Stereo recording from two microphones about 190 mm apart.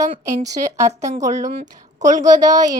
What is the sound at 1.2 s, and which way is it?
Speech, 40° right (ahead or behind).